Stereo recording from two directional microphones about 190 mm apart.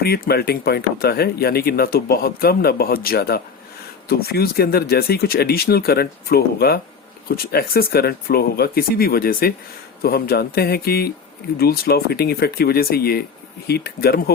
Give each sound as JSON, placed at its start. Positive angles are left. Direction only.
{"t": 0.0, "sound": "speech", "side_deg": 55}